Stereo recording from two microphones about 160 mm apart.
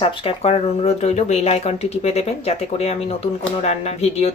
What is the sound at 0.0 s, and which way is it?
Speech, 35° left (ahead or behind).